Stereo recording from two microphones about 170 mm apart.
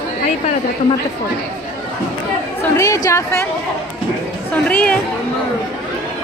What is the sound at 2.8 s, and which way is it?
Speech, 20° left (ahead or behind).